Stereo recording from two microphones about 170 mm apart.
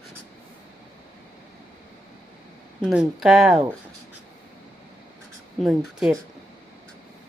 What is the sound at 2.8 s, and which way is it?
Speech, 5° right (ahead or behind).